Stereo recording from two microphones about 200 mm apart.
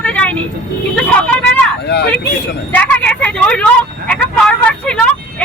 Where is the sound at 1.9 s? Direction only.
55° left (ahead or behind).